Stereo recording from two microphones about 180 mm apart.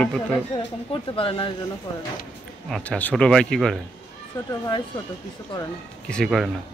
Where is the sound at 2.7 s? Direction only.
10° left (ahead or behind).